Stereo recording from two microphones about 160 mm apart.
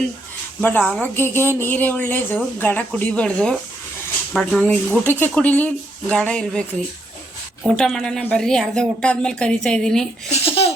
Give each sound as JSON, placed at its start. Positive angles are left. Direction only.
{"t": 0.6, "sound": "speech", "side_deg": 10}
{"t": 7.8, "sound": "speech", "side_deg": 5}
{"t": 10.3, "sound": "laughter", "side_deg": 35}